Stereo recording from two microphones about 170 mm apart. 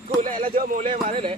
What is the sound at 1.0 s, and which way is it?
Speech, 35° right (ahead or behind).